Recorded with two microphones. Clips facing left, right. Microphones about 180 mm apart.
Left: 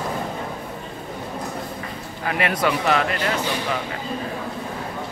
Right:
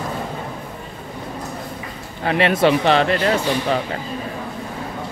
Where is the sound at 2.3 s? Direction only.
25° right (ahead or behind).